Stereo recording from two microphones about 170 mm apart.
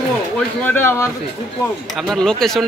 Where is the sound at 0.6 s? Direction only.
15° left (ahead or behind).